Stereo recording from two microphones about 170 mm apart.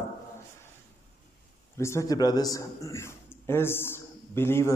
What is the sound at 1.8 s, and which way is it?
A man's voice, 15° left (ahead or behind).